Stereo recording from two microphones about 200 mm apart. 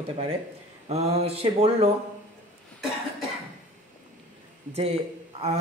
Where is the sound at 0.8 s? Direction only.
30° right (ahead or behind).